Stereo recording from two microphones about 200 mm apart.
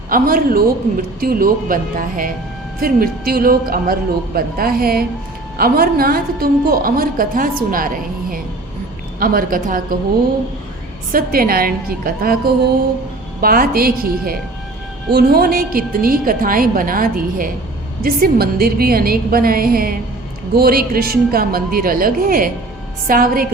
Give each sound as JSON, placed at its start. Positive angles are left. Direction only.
{"t": 0.1, "sound": "a woman's voice", "side_deg": -45}
{"t": 11.1, "sound": "a woman's voice", "side_deg": -45}
{"t": 13.4, "sound": "a woman's voice", "side_deg": -45}